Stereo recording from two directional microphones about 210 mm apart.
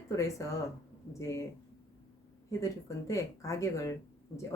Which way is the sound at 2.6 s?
15° left (ahead or behind).